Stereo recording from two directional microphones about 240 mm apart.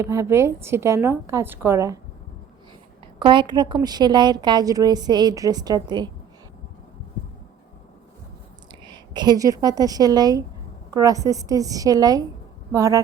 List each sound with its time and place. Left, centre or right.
0.0 s a woman's voice: centre
3.2 s a woman's voice: centre
8.8 s a woman's voice: centre